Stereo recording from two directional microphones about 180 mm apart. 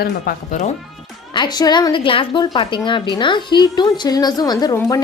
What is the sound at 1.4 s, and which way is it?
A woman's voice, 20° left (ahead or behind).